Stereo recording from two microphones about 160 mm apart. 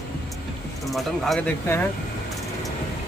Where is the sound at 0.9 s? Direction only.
5° left (ahead or behind).